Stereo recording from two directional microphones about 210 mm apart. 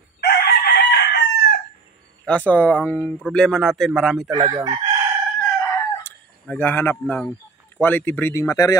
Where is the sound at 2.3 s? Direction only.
5° left (ahead or behind).